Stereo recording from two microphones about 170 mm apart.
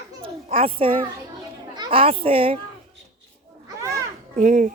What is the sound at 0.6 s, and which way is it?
A woman's voice, 35° right (ahead or behind).